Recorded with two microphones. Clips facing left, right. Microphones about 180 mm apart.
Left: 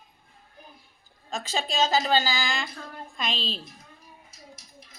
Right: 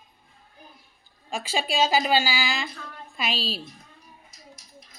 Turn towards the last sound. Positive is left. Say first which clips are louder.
# right 2 dB
turn(degrees=-10)  # may be behind; listen again after turning